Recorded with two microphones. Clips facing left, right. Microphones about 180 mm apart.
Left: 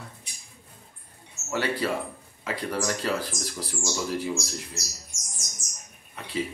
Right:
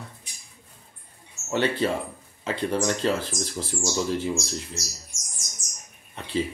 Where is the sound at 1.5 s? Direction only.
25° right (ahead or behind).